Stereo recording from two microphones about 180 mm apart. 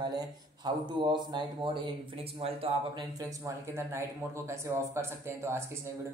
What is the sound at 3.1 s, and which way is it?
A man's voice, 15° right (ahead or behind).